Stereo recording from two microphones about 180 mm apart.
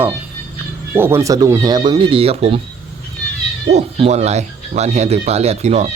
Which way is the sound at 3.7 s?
35° right (ahead or behind).